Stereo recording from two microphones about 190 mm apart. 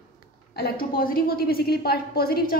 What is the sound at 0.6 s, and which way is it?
A woman's voice, 50° left (ahead or behind).